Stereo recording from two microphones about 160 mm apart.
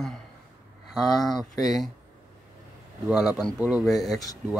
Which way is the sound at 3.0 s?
Centre (ahead or behind).